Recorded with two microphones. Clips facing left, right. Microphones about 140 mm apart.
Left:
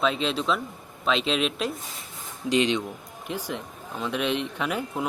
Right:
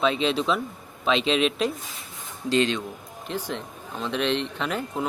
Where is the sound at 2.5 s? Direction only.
15° left (ahead or behind).